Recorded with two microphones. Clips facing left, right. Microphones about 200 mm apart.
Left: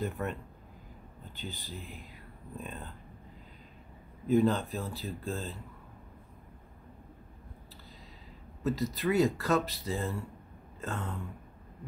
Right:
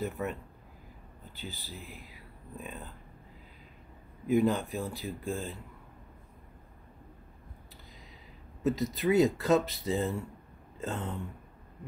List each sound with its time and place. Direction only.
0.0 s speech: 5° right (ahead or behind)
4.3 s speech: 10° right (ahead or behind)
8.6 s speech: 20° right (ahead or behind)